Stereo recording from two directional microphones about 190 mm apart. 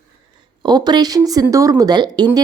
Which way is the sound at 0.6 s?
20° right (ahead or behind).